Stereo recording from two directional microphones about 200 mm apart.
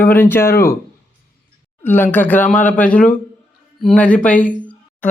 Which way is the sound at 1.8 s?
10° left (ahead or behind).